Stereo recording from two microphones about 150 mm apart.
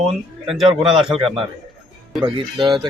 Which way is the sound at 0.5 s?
5° right (ahead or behind).